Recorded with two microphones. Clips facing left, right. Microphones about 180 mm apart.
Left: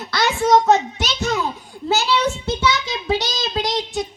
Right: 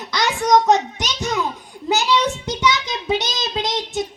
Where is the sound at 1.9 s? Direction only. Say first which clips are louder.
Even; 15° right (ahead or behind).